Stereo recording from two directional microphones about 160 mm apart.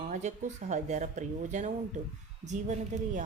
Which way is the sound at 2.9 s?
50° right (ahead or behind).